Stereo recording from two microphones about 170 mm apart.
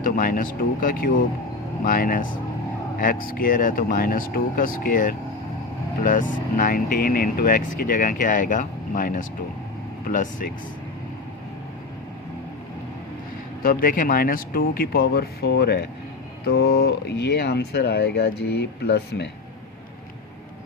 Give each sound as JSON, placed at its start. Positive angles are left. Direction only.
{"t": 0.0, "sound": "speech", "side_deg": 55}
{"t": 13.6, "sound": "speech", "side_deg": 60}